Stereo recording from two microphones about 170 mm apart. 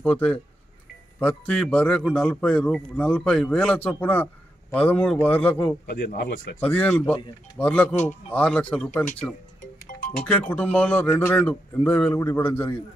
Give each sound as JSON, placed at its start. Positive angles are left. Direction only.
{"t": 0.0, "sound": "speech", "side_deg": 5}
{"t": 5.9, "sound": "speech", "side_deg": 65}
{"t": 6.6, "sound": "speech", "side_deg": 10}